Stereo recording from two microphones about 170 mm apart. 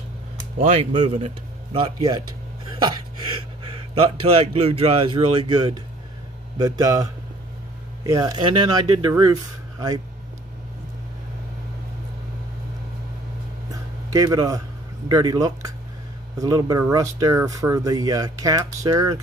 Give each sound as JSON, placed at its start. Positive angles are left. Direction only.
{"t": 1.1, "sound": "speech", "side_deg": -40}
{"t": 1.8, "sound": "speech", "side_deg": -25}
{"t": 13.7, "sound": "a sound", "side_deg": -20}
{"t": 15.0, "sound": "speech", "side_deg": -20}